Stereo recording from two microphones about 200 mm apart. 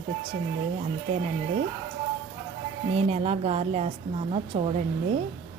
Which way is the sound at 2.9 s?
30° right (ahead or behind).